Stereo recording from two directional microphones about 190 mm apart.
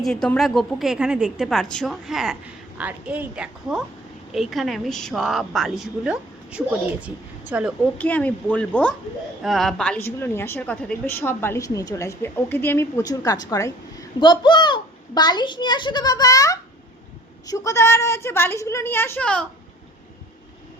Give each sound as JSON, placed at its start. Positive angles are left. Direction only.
{"t": 0.0, "sound": "a woman's voice", "side_deg": 5}
{"t": 7.9, "sound": "a woman's voice", "side_deg": 10}